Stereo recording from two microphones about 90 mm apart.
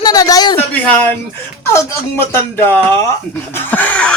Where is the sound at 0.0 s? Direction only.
45° left (ahead or behind).